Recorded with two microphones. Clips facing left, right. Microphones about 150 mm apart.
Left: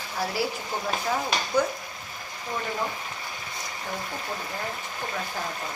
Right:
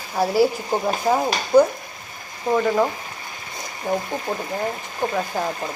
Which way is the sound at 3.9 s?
45° right (ahead or behind).